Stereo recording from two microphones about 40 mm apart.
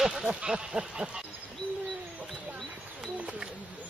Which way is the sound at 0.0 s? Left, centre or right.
Centre.